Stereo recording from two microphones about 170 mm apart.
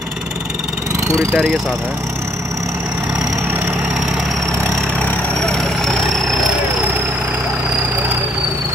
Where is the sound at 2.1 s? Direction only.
15° right (ahead or behind).